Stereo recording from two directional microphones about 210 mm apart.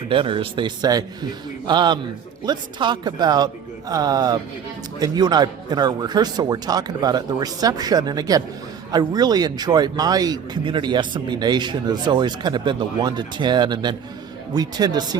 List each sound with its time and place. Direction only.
0.1 s speech: 25° right (ahead or behind)